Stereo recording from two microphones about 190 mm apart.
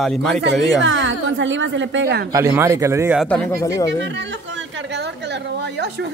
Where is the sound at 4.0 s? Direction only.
75° right (ahead or behind).